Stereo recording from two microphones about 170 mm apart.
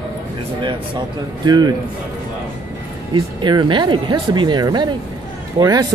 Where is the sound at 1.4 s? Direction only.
25° right (ahead or behind).